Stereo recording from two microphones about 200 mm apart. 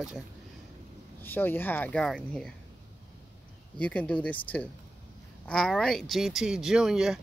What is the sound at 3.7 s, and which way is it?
Speech, 5° left (ahead or behind).